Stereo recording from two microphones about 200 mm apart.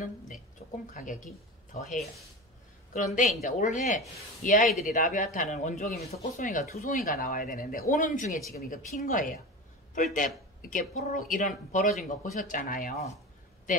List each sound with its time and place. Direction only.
0.9 s speech: 40° left (ahead or behind)
3.2 s a woman's voice: 40° left (ahead or behind)
13.7 s a sound: 40° left (ahead or behind)